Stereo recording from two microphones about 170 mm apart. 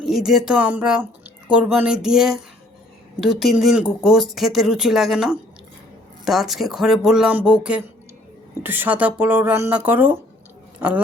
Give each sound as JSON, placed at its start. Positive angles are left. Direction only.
{"t": 0.0, "sound": "speech", "side_deg": 0}